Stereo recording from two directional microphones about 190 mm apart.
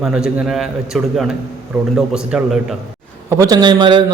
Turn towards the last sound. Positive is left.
turn(degrees=-25)  # may be behind; listen again after turning